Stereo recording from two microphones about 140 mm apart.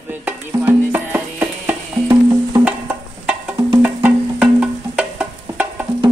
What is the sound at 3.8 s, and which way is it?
Music, 10° right (ahead or behind).